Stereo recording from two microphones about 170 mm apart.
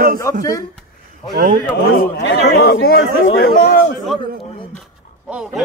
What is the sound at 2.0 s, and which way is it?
Speech, 65° left (ahead or behind).